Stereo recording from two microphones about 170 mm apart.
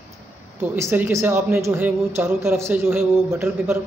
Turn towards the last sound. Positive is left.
turn(degrees=-10)  # may be behind; listen again after turning